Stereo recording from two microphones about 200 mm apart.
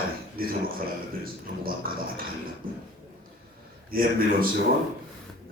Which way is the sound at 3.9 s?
45° right (ahead or behind).